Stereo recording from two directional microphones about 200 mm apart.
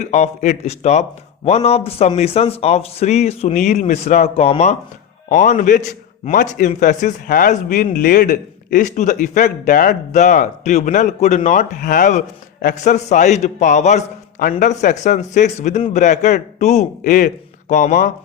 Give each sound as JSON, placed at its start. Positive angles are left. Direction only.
{"t": 0.0, "sound": "speech", "side_deg": 35}